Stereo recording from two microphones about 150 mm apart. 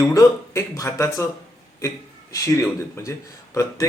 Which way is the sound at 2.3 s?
20° left (ahead or behind).